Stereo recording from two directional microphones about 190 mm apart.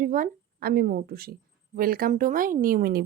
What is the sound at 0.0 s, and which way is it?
Speech, 45° right (ahead or behind).